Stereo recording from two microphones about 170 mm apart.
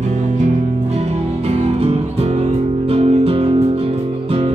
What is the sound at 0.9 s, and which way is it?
Music, 40° right (ahead or behind).